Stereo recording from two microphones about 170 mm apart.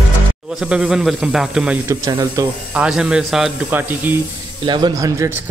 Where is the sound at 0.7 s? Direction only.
5° right (ahead or behind).